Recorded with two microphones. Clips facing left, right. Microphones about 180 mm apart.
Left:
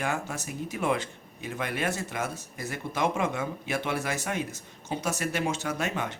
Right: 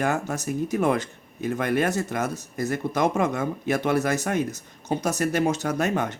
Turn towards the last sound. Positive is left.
turn(degrees=-40)  # may be behind; listen again after turning